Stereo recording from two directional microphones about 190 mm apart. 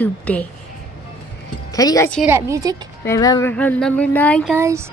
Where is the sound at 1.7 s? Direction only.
20° left (ahead or behind).